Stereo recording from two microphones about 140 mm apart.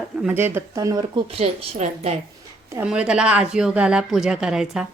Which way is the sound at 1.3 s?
45° right (ahead or behind).